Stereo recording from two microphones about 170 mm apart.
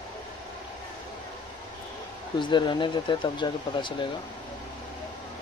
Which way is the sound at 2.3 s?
25° left (ahead or behind).